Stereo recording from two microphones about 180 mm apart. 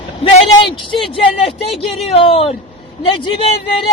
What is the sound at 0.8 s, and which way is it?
Speech, 30° left (ahead or behind).